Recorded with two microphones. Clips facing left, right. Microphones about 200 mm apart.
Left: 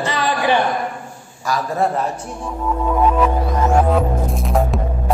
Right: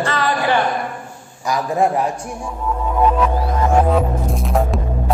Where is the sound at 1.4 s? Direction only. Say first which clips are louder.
Right 2 dB; 15° right (ahead or behind).